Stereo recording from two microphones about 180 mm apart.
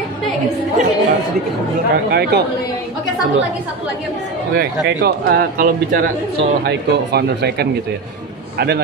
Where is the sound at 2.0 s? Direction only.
65° right (ahead or behind).